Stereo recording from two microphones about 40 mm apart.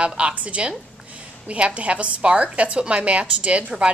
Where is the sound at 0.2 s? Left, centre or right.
Right.